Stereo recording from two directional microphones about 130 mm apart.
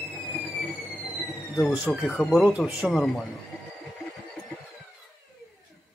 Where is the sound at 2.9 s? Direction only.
5° left (ahead or behind).